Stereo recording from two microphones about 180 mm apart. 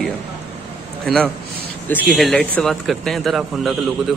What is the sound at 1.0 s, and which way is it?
A man's voice, centre (ahead or behind).